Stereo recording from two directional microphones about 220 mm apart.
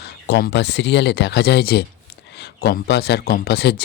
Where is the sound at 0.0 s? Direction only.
45° left (ahead or behind).